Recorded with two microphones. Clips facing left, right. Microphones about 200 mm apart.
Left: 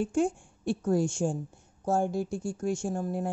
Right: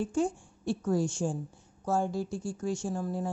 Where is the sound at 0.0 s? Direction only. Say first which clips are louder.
Left 2 dB; 55° left (ahead or behind).